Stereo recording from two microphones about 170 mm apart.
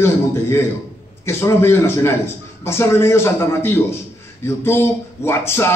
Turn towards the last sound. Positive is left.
turn(degrees=15)  # may be behind; listen again after turning